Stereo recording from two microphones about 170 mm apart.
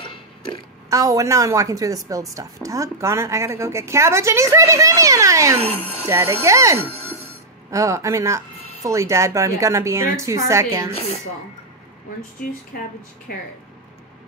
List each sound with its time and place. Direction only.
0.8 s a woman's voice: 20° right (ahead or behind)
12.4 s speech: 60° left (ahead or behind)